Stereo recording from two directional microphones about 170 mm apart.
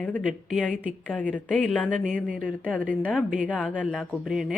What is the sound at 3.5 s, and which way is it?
Speech, 5° right (ahead or behind).